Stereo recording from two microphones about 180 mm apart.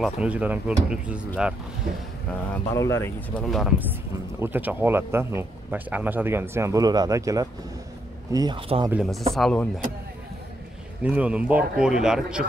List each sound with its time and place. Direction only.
0.0 s speech: 5° right (ahead or behind)
1.9 s speech: 55° right (ahead or behind)
2.5 s speech: 15° left (ahead or behind)
3.4 s a man's voice: centre (ahead or behind); by 8.9 s 30° right (ahead or behind)
8.9 s speech: centre (ahead or behind)
11.0 s speech: 10° right (ahead or behind)